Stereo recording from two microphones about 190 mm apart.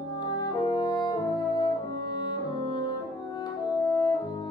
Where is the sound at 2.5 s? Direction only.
20° left (ahead or behind).